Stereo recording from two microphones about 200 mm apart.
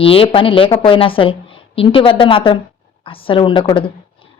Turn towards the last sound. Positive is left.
turn(degrees=25)  # may be behind; listen again after turning